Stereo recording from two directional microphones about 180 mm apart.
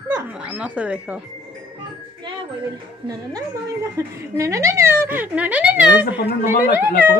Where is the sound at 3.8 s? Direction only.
15° right (ahead or behind).